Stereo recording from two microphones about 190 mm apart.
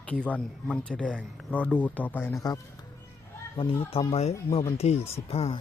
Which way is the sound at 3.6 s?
30° left (ahead or behind).